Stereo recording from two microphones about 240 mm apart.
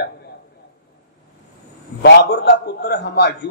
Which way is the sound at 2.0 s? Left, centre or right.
Left.